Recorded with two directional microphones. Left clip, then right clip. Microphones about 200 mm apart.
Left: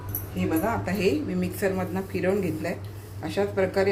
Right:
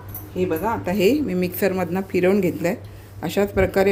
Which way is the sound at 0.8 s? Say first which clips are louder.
Right 6 dB; 50° right (ahead or behind).